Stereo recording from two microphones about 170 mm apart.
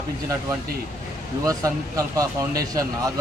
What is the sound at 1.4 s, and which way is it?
Speech, 20° right (ahead or behind).